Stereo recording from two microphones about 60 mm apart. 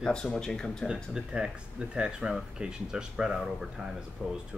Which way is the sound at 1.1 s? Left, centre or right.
Centre.